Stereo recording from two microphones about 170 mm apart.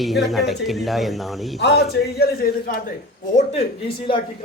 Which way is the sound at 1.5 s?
80° left.